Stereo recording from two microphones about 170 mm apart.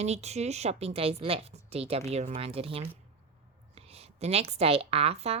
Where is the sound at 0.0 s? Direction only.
40° right (ahead or behind).